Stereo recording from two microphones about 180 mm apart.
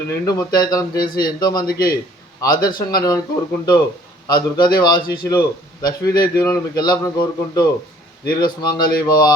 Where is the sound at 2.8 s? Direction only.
20° left (ahead or behind).